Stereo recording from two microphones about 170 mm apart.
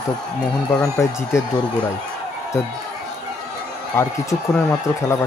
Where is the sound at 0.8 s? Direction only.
20° left (ahead or behind).